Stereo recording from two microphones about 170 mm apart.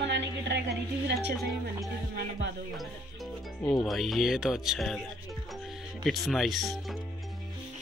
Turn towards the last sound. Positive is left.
turn(degrees=0)  # may be behind; listen again after turning